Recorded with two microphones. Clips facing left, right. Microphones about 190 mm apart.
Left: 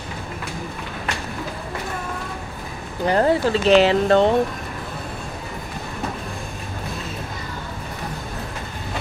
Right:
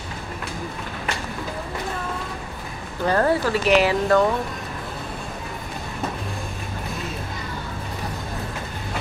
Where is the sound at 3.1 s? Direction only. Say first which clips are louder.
Left 2 dB; 20° left (ahead or behind).